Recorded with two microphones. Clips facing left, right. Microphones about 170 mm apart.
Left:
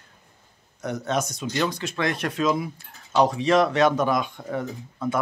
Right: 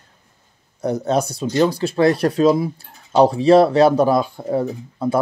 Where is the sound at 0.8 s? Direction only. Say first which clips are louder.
Right 7 dB; 35° right (ahead or behind).